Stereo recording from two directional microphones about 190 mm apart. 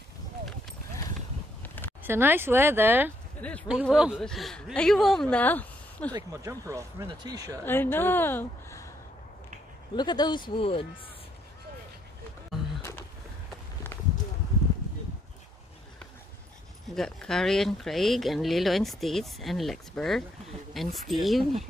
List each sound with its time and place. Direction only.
1.6 s a sound: 10° left (ahead or behind)
2.0 s speech: 10° right (ahead or behind)
3.3 s speech: 5° left (ahead or behind)
3.8 s speech: 5° right (ahead or behind)
6.1 s speech: 15° right (ahead or behind)
7.6 s speech: 10° left (ahead or behind)
9.9 s speech: 20° left (ahead or behind)
16.8 s speech: centre (ahead or behind)